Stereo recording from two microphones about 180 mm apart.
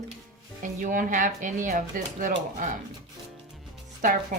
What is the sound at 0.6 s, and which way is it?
Speech, 45° right (ahead or behind).